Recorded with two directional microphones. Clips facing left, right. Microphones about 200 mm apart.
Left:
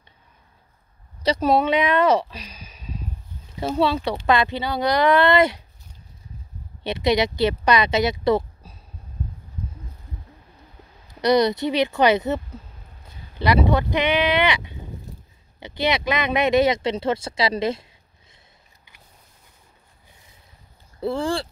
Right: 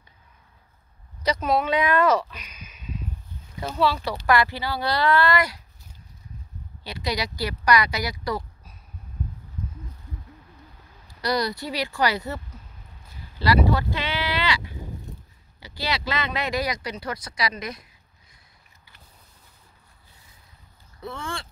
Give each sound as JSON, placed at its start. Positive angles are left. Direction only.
{"t": 1.2, "sound": "speech", "side_deg": 30}
{"t": 6.8, "sound": "speech", "side_deg": 25}
{"t": 11.1, "sound": "speech", "side_deg": 20}
{"t": 13.4, "sound": "speech", "side_deg": 20}
{"t": 21.0, "sound": "speech", "side_deg": 30}